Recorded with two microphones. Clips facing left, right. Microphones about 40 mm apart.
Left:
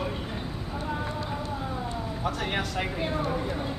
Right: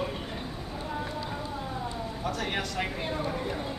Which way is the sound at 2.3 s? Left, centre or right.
Centre.